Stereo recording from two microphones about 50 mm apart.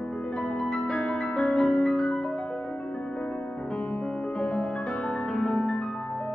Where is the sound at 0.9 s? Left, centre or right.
Centre.